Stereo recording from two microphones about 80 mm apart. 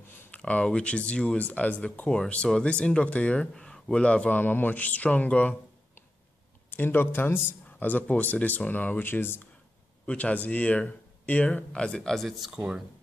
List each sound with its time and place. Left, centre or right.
0.3 s speech: centre
6.7 s speech: left
10.0 s speech: centre